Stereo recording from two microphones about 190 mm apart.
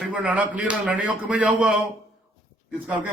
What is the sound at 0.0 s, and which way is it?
Speech, 5° right (ahead or behind).